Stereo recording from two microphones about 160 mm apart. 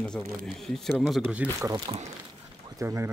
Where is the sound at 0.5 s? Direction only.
Centre (ahead or behind).